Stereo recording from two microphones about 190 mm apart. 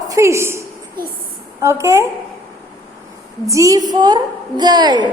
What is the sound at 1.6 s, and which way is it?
Speech, 15° right (ahead or behind).